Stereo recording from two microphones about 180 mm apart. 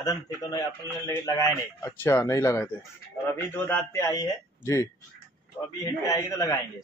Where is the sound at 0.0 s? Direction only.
20° left (ahead or behind).